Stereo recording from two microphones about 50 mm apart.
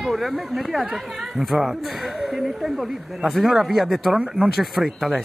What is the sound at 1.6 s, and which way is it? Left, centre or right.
Speech, centre.